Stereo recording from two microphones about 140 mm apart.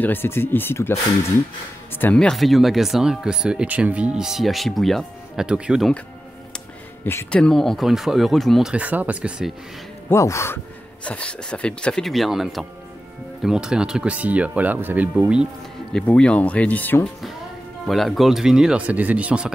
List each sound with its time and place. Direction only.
0.0 s speech: 15° left (ahead or behind); by 5.9 s 5° right (ahead or behind)
7.2 s speech: 5° left (ahead or behind)
10.0 s speech: 20° left (ahead or behind)
11.1 s speech: 10° left (ahead or behind); by 15.4 s 10° right (ahead or behind)
15.9 s speech: 5° left (ahead or behind)
17.8 s speech: centre (ahead or behind)